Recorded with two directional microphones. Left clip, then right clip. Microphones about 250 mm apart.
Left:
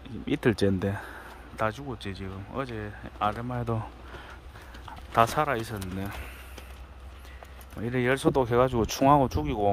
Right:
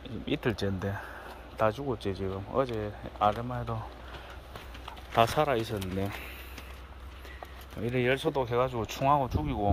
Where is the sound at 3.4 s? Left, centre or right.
Left.